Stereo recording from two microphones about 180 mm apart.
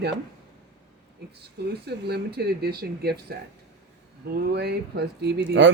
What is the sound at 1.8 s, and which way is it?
Speech, 65° right (ahead or behind).